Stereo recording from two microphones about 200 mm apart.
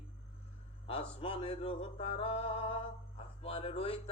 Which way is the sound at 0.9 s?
25° left (ahead or behind).